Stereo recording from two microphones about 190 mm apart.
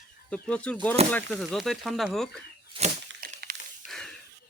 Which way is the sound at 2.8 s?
25° right (ahead or behind).